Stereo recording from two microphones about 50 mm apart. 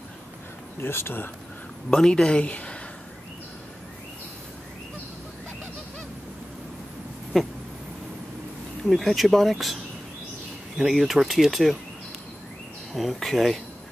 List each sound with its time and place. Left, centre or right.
0.7 s speech: left
1.9 s speech: centre
8.8 s speech: centre
10.8 s speech: centre
12.9 s speech: centre